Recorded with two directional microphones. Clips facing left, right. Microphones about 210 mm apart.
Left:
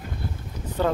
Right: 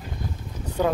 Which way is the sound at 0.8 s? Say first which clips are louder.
Right 1 dB; 15° right (ahead or behind).